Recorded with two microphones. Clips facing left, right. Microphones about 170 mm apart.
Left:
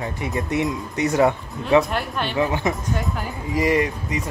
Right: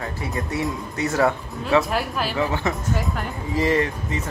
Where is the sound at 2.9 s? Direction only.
Centre (ahead or behind).